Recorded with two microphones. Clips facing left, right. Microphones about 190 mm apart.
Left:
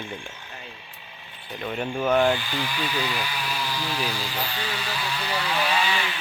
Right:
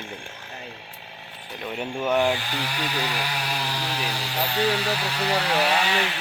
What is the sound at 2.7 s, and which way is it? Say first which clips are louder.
Speech: even; 70° right (ahead or behind).